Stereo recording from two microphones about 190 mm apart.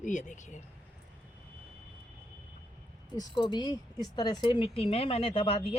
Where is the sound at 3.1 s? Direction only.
20° left (ahead or behind).